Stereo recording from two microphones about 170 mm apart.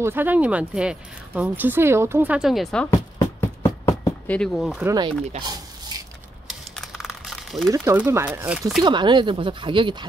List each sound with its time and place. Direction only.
0.0 s speech: 10° right (ahead or behind)
3.2 s a sound: 15° left (ahead or behind)
4.4 s speech: centre (ahead or behind)
4.8 s speech: 25° right (ahead or behind)
5.4 s a sound: 25° right (ahead or behind)
6.4 s typing: centre (ahead or behind)
7.7 s speech: 15° right (ahead or behind)
8.8 s speech: 25° right (ahead or behind)